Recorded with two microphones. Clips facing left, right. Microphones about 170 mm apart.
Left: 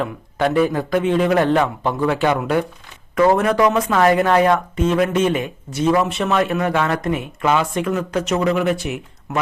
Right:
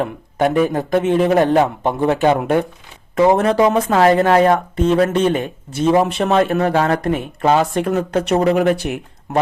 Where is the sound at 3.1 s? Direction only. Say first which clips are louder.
Right 2 dB; 25° right (ahead or behind).